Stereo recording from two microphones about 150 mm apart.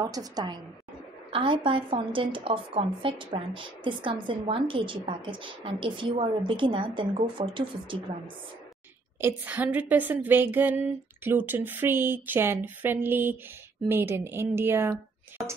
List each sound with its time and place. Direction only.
0.0 s a woman's voice: 25° right (ahead or behind)
9.2 s a woman's voice: 10° right (ahead or behind)